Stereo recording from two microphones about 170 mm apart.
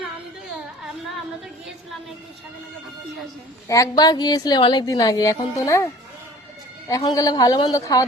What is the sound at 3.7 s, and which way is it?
A woman's voice, 20° left (ahead or behind).